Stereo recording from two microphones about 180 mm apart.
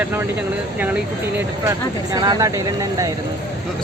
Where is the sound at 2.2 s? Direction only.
20° right (ahead or behind).